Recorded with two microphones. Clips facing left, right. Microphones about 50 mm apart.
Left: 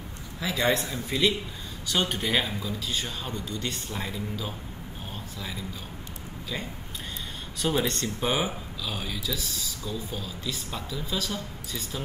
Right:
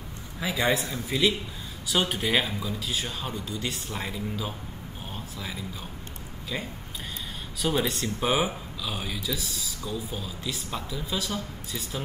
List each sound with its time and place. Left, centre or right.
0.4 s a man's voice: centre
0.7 s speech: centre
5.1 s a sound: centre
6.5 s speech: centre